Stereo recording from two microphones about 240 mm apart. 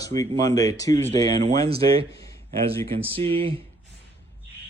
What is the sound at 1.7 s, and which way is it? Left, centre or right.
Speech, right.